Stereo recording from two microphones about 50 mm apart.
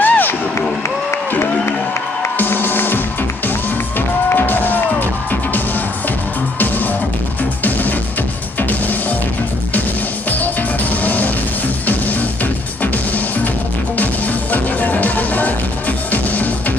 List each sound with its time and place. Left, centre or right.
0.0 s crowd: left
2.3 s music: left
4.3 s music: left
6.6 s music: left
10.4 s music: left